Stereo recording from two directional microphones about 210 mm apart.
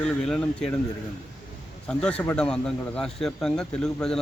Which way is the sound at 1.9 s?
5° left (ahead or behind).